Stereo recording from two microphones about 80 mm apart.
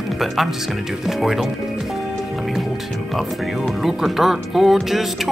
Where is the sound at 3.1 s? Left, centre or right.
Centre.